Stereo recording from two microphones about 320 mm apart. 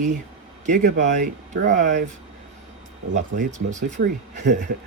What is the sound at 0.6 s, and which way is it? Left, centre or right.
Speech, right.